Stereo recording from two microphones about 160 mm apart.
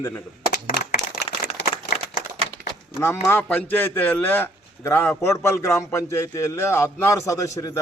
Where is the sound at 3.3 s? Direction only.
10° left (ahead or behind).